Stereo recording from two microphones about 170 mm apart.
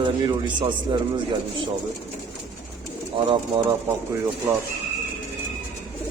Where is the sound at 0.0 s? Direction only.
30° right (ahead or behind).